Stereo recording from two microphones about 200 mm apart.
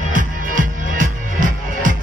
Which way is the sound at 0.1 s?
40° right (ahead or behind).